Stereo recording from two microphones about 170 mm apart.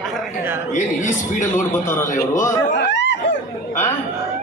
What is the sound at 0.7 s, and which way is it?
A woman's voice, 45° left (ahead or behind).